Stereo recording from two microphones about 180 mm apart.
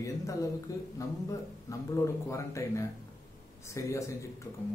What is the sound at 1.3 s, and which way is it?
Speech, 15° left (ahead or behind).